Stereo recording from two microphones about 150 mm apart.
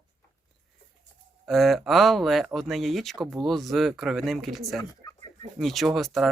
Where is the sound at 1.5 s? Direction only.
Centre (ahead or behind).